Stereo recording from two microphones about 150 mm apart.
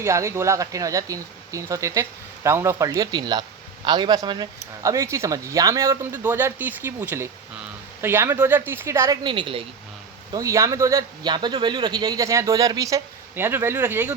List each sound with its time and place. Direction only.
0.0 s speech: 20° right (ahead or behind)
9.2 s a woman's voice: 35° right (ahead or behind)
10.3 s speech: 20° right (ahead or behind)